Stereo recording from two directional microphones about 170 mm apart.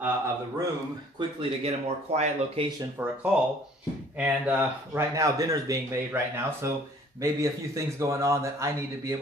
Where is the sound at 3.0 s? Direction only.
10° right (ahead or behind).